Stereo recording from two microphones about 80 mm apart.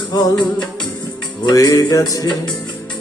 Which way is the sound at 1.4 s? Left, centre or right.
Left.